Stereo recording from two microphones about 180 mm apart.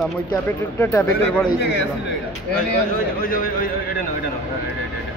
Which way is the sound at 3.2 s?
50° left (ahead or behind).